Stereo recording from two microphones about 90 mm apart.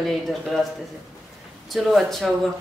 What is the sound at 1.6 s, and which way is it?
Speech, centre (ahead or behind).